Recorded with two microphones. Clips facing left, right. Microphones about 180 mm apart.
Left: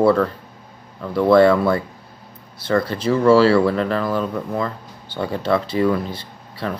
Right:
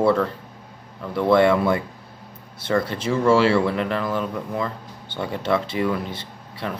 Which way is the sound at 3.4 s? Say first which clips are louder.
Left 4 dB; 20° right (ahead or behind).